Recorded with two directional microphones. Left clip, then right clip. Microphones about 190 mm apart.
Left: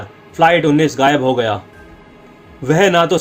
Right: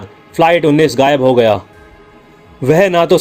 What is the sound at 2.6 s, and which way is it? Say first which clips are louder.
Speech: right 2 dB; 45° right (ahead or behind).